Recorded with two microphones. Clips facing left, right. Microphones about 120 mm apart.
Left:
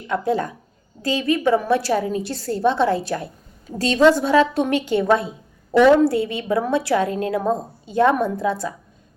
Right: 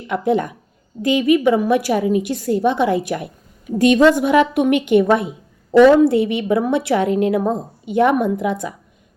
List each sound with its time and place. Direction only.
0.1 s a woman's voice: 20° right (ahead or behind)